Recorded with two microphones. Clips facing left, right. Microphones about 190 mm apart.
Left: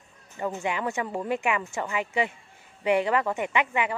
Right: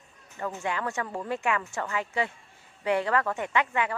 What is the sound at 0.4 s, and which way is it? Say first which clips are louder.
Speech: left 2 dB; 15° left (ahead or behind).